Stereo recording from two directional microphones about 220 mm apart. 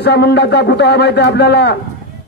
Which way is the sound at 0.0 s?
50° left (ahead or behind).